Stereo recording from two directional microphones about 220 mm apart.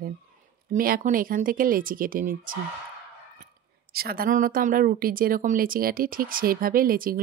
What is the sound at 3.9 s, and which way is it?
A woman's voice, 45° right (ahead or behind).